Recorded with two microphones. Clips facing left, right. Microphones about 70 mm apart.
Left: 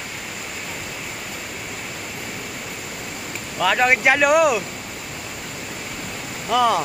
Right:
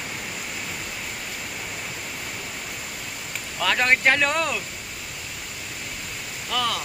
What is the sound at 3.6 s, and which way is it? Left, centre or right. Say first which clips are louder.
Speech: left 4 dB; centre.